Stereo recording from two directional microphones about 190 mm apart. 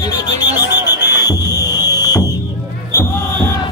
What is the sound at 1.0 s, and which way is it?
Music, 60° left (ahead or behind).